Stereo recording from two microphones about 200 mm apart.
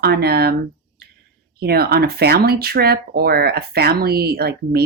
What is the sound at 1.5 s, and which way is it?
Speech, 50° right (ahead or behind).